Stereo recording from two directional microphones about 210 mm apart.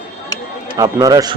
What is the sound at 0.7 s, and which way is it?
Speech, 15° right (ahead or behind).